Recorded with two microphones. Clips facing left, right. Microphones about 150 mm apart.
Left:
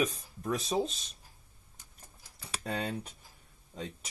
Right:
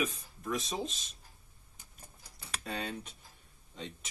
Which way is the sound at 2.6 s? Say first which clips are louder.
Left 4 dB; 35° left (ahead or behind).